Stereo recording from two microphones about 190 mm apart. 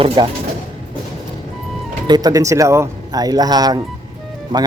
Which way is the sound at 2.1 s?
20° right (ahead or behind).